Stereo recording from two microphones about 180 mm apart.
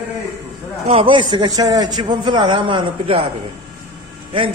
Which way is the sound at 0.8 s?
30° right (ahead or behind).